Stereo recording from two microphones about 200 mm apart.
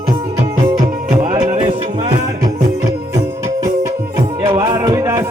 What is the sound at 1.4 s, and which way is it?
Music, 30° right (ahead or behind).